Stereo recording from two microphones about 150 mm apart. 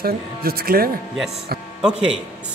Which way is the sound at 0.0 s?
85° right.